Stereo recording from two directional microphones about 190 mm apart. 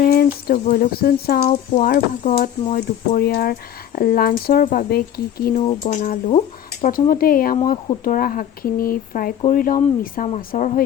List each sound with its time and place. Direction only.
0.0 s speech: 50° left (ahead or behind)